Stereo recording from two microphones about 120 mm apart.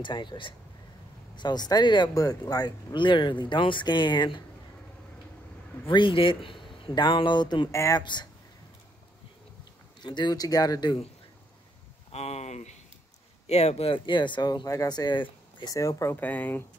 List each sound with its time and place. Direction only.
0.0 s speech: 40° left (ahead or behind)
5.9 s speech: 45° left (ahead or behind)
7.7 s speech: 25° left (ahead or behind)
8.0 s speech: 40° left (ahead or behind)
10.0 s speech: 35° left (ahead or behind)
12.1 s a sound: 60° left (ahead or behind)
13.5 s speech: 65° left (ahead or behind); by 15.7 s 40° left (ahead or behind)
15.7 s speech: 25° left (ahead or behind)
16.2 s speech: 15° left (ahead or behind)